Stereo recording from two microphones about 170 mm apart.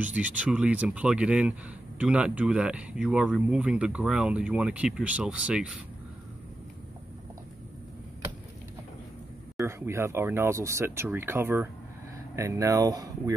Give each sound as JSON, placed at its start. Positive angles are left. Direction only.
{"t": 0.0, "sound": "speech", "side_deg": -10}
{"t": 9.6, "sound": "speech", "side_deg": -15}